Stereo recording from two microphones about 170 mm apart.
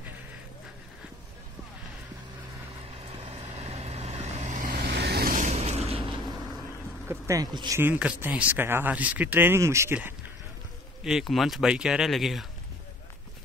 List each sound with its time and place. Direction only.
3.0 s vehicle: 35° right (ahead or behind)
4.7 s vehicle: 80° right
5.3 s boat: 45° right (ahead or behind)
7.1 s speech: 20° right (ahead or behind)
7.8 s speech: 10° right (ahead or behind)
11.1 s speech: centre (ahead or behind)